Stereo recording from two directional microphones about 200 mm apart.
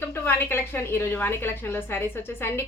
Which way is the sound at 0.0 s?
10° left (ahead or behind).